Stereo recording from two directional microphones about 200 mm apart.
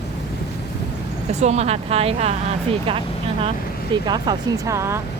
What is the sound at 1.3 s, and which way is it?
Speech, 35° right (ahead or behind).